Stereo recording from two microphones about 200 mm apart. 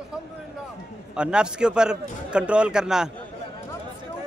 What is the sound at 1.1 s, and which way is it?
Speech, 5° right (ahead or behind).